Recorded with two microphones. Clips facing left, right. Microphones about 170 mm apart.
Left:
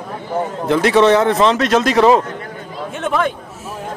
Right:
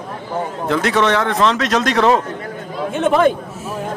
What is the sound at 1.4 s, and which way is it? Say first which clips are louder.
Speech: left 2 dB; centre (ahead or behind).